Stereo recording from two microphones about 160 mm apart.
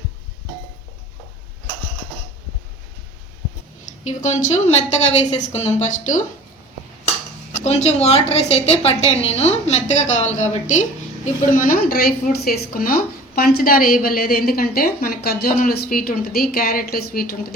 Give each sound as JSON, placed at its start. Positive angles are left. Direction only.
{"t": 3.8, "sound": "a woman's voice", "side_deg": 50}
{"t": 7.6, "sound": "a woman's voice", "side_deg": 45}